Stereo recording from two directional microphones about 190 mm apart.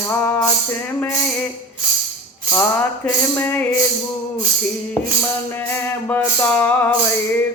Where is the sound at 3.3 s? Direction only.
10° left (ahead or behind).